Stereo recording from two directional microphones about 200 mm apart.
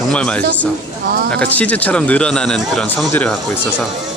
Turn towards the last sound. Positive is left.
turn(degrees=10)  # may be behind; listen again after turning